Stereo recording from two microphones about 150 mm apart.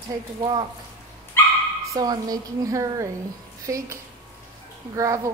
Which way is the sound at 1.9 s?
25° right (ahead or behind).